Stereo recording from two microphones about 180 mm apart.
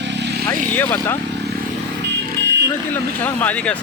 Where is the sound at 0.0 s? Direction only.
75° right (ahead or behind).